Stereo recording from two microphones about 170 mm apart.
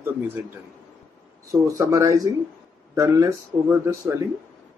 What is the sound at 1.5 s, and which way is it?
Speech, 20° right (ahead or behind).